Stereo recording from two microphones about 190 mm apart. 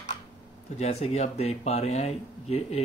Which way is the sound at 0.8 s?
35° left (ahead or behind).